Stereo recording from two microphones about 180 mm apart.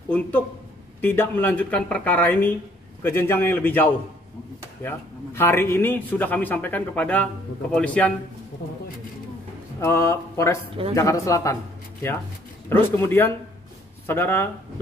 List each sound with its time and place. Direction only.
0.1 s a man's voice: 10° left (ahead or behind)
9.8 s a man's voice: 15° left (ahead or behind)
12.9 s a man's voice: 15° left (ahead or behind)